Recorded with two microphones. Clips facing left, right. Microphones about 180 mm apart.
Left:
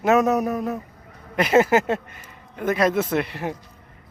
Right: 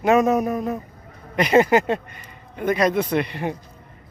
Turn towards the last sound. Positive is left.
turn(degrees=5)  # may be behind; listen again after turning